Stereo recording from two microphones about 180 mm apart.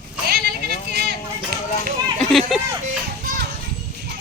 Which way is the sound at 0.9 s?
65° right (ahead or behind).